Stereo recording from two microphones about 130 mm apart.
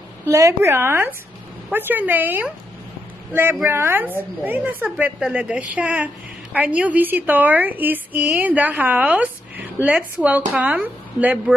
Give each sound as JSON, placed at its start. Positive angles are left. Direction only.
{"t": 0.2, "sound": "a woman's voice", "side_deg": -25}
{"t": 3.6, "sound": "a woman's voice", "side_deg": -20}